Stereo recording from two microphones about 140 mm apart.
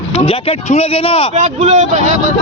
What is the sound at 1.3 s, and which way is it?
Speech, 60° right (ahead or behind).